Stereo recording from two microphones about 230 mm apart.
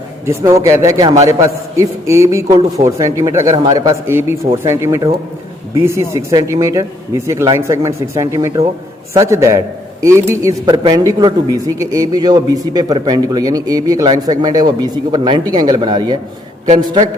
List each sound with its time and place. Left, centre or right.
0.3 s a man's voice: centre